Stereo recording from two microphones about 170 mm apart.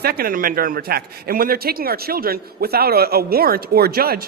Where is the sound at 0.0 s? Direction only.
60° right (ahead or behind).